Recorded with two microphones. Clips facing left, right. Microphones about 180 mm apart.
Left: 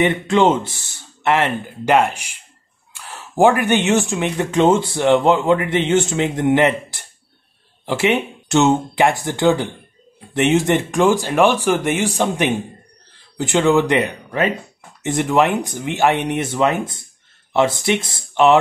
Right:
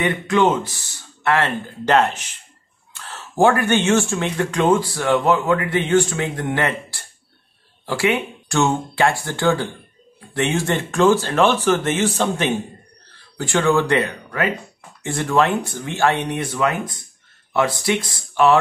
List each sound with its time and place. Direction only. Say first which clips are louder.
0.0 s speech: left 3 dB; 25° left (ahead or behind)